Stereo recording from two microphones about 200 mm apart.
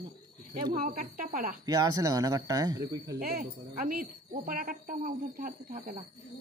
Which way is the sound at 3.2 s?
45° right (ahead or behind).